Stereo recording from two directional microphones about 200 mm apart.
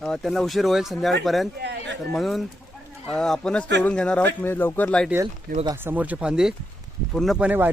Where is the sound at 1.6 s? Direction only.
60° right (ahead or behind).